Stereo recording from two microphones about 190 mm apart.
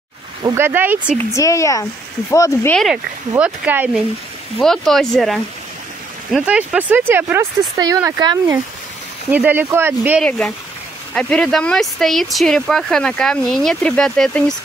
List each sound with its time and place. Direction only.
0.4 s speech: 10° right (ahead or behind)
1.3 s speech: 15° left (ahead or behind)
2.7 s speech: centre (ahead or behind)
4.6 s speech: centre (ahead or behind)
11.1 s speech: 5° left (ahead or behind)